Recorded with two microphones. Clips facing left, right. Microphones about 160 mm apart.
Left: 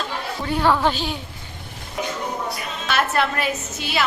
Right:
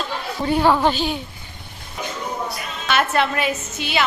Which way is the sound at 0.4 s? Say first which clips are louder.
Right 3 dB; 20° right (ahead or behind).